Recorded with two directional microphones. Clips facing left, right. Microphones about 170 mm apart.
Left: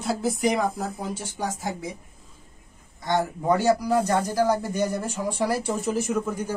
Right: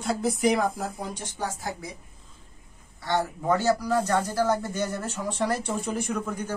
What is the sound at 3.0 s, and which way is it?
A man's voice, 15° left (ahead or behind).